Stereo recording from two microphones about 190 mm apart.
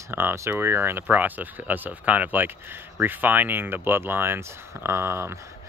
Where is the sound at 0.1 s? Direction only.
10° right (ahead or behind).